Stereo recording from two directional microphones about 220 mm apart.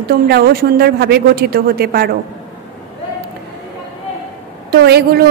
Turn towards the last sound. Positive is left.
turn(degrees=-45)  # may be behind; listen again after turning